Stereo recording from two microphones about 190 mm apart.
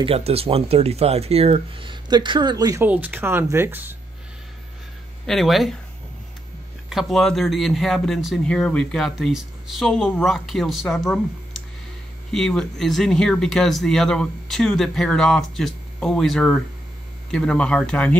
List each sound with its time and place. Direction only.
0.0 s speech: 30° right (ahead or behind); by 3.9 s 10° right (ahead or behind)
5.2 s speech: centre (ahead or behind)
6.9 s speech: centre (ahead or behind)
12.3 s speech: centre (ahead or behind)